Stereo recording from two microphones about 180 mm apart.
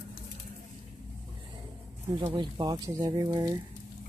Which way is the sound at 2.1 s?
25° right (ahead or behind).